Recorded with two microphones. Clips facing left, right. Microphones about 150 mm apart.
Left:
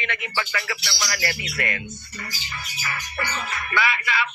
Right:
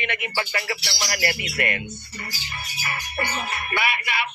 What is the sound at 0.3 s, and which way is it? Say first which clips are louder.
Speech: even; 35° right (ahead or behind).